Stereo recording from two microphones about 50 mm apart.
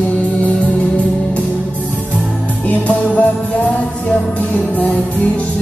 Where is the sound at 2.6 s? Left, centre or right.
Left.